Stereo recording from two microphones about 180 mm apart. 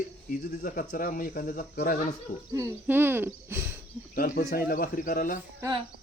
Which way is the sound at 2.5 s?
15° right (ahead or behind).